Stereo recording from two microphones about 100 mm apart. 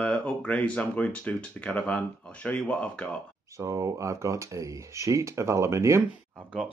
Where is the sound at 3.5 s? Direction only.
30° right (ahead or behind).